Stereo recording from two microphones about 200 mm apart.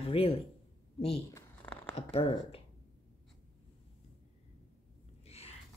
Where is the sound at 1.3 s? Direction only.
10° left (ahead or behind).